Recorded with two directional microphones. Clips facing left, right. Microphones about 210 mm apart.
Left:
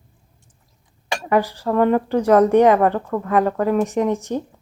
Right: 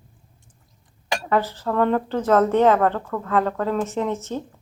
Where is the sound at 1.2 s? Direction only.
15° left (ahead or behind).